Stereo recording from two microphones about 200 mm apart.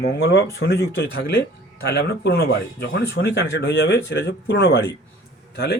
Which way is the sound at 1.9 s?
55° left (ahead or behind).